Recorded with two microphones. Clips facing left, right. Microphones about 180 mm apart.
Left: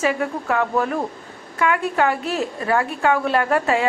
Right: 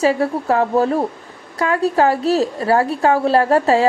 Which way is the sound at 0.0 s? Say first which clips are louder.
Right 5 dB; 35° right (ahead or behind).